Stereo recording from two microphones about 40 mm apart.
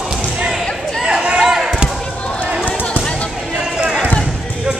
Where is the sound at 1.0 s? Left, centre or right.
Right.